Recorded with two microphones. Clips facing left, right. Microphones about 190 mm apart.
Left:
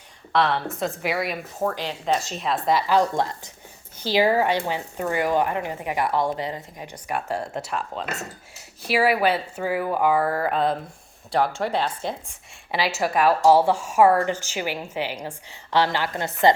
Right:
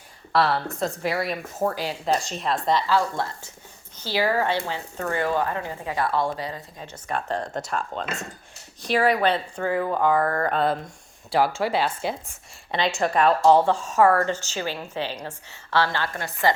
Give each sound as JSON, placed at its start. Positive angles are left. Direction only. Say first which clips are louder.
{"t": 0.3, "sound": "speech", "louder": "even", "side_deg": -5}
{"t": 1.6, "sound": "speech", "louder": "right 1 dB", "side_deg": -10}
{"t": 2.1, "sound": "speech", "louder": "even", "side_deg": 0}
{"t": 2.8, "sound": "speech", "louder": "left 3 dB", "side_deg": 15}
{"t": 12.7, "sound": "speech", "louder": "even", "side_deg": 5}